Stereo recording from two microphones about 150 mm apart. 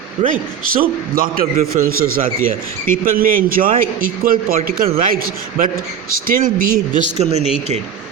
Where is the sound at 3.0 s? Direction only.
70° right (ahead or behind).